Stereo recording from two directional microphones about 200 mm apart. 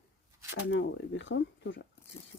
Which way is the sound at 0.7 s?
65° left (ahead or behind).